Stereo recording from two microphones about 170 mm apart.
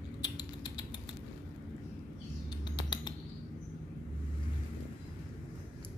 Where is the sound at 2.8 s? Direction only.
25° left (ahead or behind).